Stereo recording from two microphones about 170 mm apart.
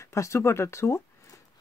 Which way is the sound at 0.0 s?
15° left (ahead or behind).